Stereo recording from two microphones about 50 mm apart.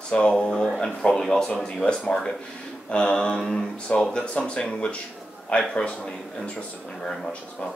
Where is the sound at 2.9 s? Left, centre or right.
Centre.